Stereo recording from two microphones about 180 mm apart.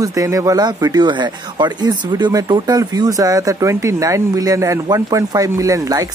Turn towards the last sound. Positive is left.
turn(degrees=-20)  # may be behind; listen again after turning